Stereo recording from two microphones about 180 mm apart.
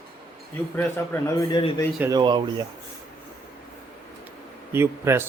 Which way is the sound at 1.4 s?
25° left (ahead or behind).